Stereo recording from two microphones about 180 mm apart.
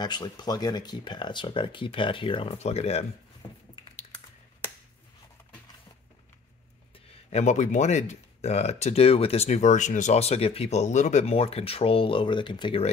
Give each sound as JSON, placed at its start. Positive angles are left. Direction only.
{"t": 0.0, "sound": "speech", "side_deg": 25}
{"t": 3.4, "sound": "squish", "side_deg": 25}
{"t": 7.2, "sound": "speech", "side_deg": 40}